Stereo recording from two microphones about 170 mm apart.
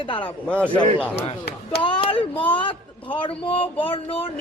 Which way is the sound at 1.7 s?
30° left (ahead or behind).